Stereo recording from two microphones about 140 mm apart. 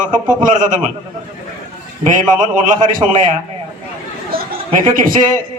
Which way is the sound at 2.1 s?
70° right (ahead or behind).